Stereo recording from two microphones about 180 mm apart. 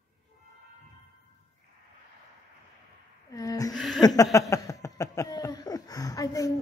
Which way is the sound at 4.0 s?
20° left (ahead or behind).